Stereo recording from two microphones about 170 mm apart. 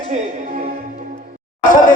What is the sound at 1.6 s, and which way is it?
Speech, 50° left (ahead or behind).